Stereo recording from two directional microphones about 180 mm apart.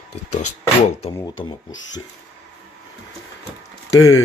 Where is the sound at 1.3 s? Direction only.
90° left.